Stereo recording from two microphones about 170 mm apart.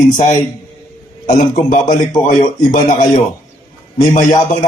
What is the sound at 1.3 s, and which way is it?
A man's voice, 50° left (ahead or behind).